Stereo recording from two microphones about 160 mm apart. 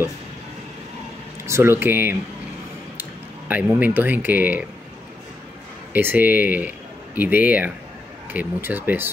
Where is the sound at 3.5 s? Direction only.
10° right (ahead or behind).